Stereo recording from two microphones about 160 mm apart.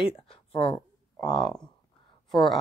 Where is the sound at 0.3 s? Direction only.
35° left (ahead or behind).